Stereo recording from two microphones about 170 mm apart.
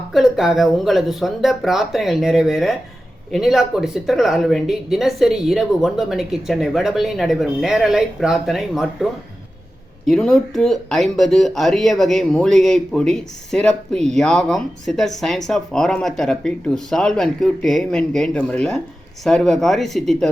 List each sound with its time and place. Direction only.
0.1 s speech: centre (ahead or behind)
10.1 s speech: centre (ahead or behind)